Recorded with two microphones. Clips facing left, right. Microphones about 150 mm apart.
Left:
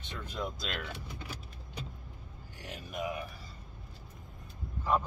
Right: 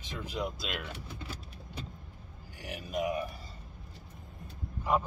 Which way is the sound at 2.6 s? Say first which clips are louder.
Right 3 dB; 10° right (ahead or behind).